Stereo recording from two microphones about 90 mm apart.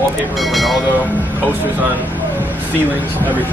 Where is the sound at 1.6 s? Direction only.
20° right (ahead or behind).